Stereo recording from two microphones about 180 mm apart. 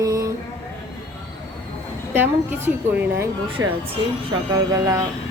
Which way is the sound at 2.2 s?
10° right (ahead or behind).